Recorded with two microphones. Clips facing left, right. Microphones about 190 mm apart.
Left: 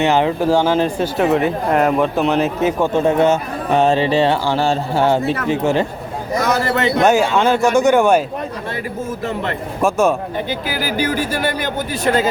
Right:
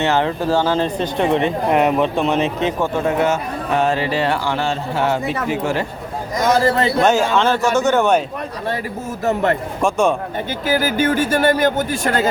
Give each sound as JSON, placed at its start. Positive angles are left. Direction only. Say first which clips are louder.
{"t": 0.0, "sound": "speech", "louder": "left 3 dB", "side_deg": 15}
{"t": 2.8, "sound": "speech", "louder": "left 4 dB", "side_deg": 25}
{"t": 6.4, "sound": "a man's voice", "louder": "right 3 dB", "side_deg": -30}
{"t": 7.0, "sound": "speech", "louder": "left 2 dB", "side_deg": 10}
{"t": 9.2, "sound": "speech", "louder": "right 7 dB", "side_deg": -45}
{"t": 9.8, "sound": "speech", "louder": "left 2 dB", "side_deg": 5}
{"t": 10.5, "sound": "speech", "louder": "right 7 dB", "side_deg": -45}